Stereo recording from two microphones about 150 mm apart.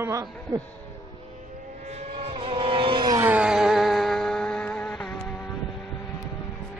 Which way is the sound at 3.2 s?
10° right (ahead or behind).